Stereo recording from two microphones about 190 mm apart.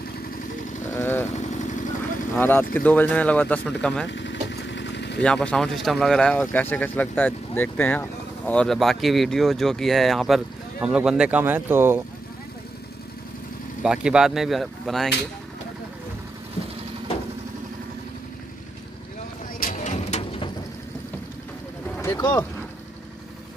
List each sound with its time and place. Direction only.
0.9 s vehicle: 10° left (ahead or behind)
2.3 s speech: 10° left (ahead or behind)
4.1 s vehicle: 70° left (ahead or behind)
5.2 s speech: 5° left (ahead or behind); by 12.0 s 15° right (ahead or behind)
13.8 s speech: 5° right (ahead or behind)
19.6 s a sound: 40° left (ahead or behind)
21.9 s boat: 20° left (ahead or behind)